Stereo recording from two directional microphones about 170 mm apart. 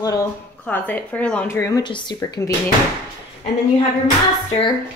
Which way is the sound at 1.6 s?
20° left (ahead or behind).